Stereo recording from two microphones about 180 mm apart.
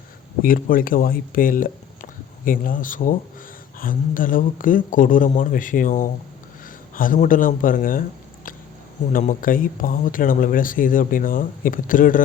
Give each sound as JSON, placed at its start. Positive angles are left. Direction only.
{"t": 0.4, "sound": "speech", "side_deg": 50}
{"t": 9.1, "sound": "speech", "side_deg": 50}